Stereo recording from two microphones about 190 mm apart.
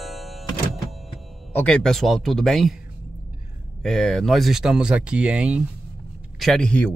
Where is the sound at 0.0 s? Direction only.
Centre (ahead or behind).